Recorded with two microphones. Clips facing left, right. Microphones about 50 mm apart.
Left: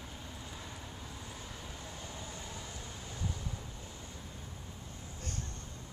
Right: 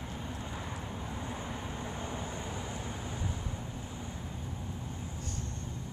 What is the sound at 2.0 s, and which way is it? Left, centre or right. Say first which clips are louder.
Vehicle: right 7 dB; right.